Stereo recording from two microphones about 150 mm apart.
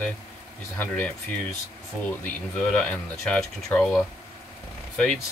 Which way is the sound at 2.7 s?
5° left (ahead or behind).